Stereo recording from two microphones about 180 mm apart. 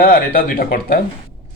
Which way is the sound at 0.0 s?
55° left (ahead or behind).